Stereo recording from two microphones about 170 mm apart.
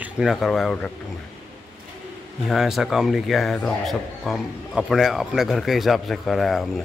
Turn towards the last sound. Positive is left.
turn(degrees=0)  # may be behind; listen again after turning